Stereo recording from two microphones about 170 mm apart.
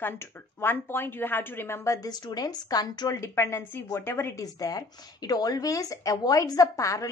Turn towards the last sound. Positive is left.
turn(degrees=20)  # may be behind; listen again after turning